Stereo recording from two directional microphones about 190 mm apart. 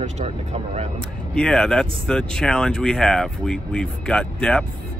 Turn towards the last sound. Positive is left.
turn(degrees=5)  # may be behind; listen again after turning